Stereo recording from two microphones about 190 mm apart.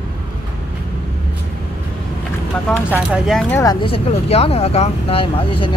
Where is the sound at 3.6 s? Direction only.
20° left (ahead or behind).